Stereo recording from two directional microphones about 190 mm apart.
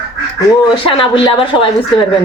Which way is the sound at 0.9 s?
25° left (ahead or behind).